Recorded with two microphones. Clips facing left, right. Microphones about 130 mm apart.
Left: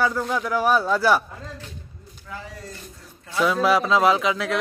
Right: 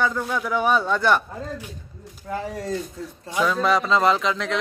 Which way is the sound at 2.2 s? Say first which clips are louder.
Right 9 dB; 50° right (ahead or behind).